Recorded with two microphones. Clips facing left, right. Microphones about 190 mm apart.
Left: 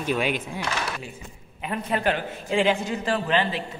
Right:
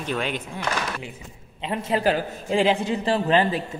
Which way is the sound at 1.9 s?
35° right (ahead or behind).